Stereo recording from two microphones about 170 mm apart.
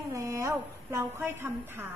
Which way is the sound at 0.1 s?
20° right (ahead or behind).